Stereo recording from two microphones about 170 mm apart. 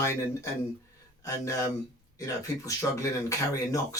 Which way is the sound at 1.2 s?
20° left (ahead or behind).